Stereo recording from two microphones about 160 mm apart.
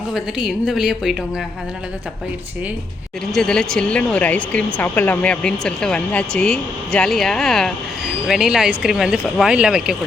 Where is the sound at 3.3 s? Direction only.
5° left (ahead or behind).